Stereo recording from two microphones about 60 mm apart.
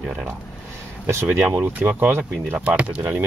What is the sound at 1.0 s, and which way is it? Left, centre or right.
Speech, right.